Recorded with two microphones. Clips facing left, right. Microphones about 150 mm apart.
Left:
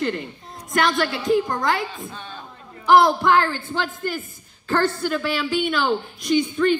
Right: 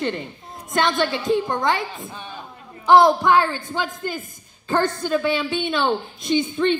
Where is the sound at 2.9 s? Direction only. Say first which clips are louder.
Right 1 dB; 20° right (ahead or behind).